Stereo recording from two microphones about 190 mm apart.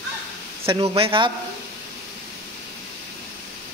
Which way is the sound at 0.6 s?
30° right (ahead or behind).